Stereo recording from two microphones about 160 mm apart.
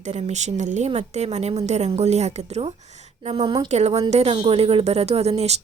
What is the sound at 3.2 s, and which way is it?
Speech, 30° right (ahead or behind).